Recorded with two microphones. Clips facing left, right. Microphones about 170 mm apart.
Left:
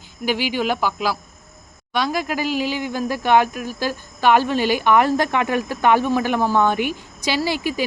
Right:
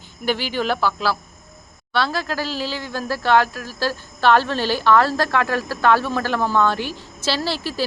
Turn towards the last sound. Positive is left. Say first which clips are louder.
# left 2 dB
turn(degrees=15)  # may be behind; listen again after turning